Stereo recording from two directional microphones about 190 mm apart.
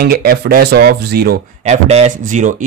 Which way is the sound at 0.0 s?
50° right (ahead or behind).